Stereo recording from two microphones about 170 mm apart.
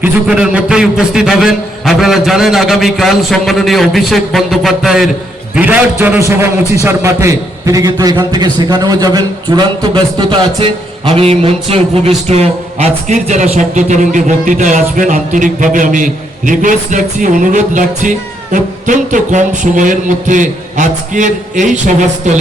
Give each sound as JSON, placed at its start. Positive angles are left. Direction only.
{"t": 0.0, "sound": "a man's voice", "side_deg": -5}